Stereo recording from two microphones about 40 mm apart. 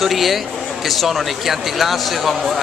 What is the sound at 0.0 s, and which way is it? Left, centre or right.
Speech, centre.